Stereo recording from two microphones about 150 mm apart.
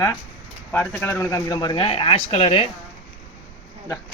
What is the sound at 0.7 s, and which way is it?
A man's voice, 15° left (ahead or behind).